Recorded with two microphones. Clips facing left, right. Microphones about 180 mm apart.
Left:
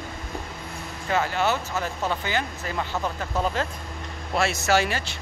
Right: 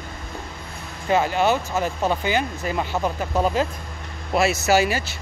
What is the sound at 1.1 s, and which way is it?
Speech, 15° right (ahead or behind).